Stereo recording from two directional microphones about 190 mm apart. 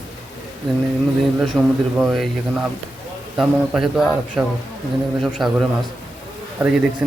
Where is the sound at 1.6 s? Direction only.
Centre (ahead or behind).